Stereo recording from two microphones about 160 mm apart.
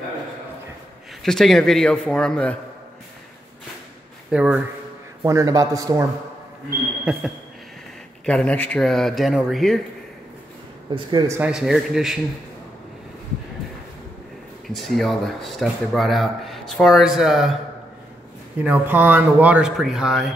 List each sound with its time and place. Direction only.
1.2 s speech: centre (ahead or behind)
4.3 s speech: 5° right (ahead or behind)
5.2 s a man's voice: 20° right (ahead or behind)
7.1 s speech: 10° right (ahead or behind)
8.3 s speech: 10° left (ahead or behind)
11.1 s a man's voice: 25° right (ahead or behind)
11.3 s speech: 5° right (ahead or behind)
14.7 s speech: centre (ahead or behind)
18.6 s speech: 10° right (ahead or behind)